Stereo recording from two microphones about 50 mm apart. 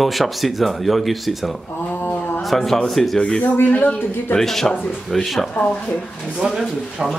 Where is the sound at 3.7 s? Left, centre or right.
Left.